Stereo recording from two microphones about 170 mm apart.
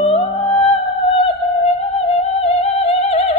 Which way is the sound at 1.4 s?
40° left (ahead or behind).